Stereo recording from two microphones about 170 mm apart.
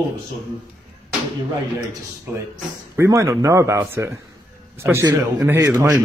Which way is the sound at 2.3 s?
10° right (ahead or behind).